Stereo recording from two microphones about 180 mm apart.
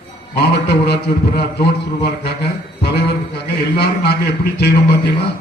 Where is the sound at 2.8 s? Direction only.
65° left (ahead or behind).